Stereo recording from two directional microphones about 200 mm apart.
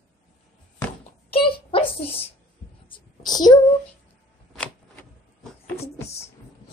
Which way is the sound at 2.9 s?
20° left (ahead or behind).